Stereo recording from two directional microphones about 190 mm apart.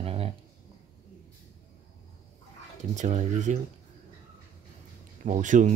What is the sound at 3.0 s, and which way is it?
Speech, 40° right (ahead or behind).